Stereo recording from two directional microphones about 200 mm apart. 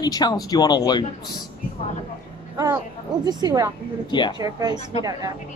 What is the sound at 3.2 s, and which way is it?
Speech, 20° right (ahead or behind).